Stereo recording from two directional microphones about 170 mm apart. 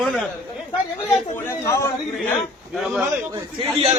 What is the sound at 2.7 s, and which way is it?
Speech, centre (ahead or behind).